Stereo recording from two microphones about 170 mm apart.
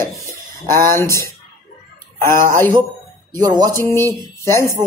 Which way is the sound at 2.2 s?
55° right (ahead or behind).